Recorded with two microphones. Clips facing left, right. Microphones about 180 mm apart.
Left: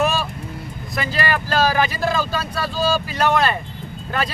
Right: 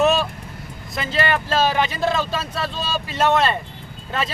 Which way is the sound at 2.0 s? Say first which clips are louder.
Even; centre (ahead or behind).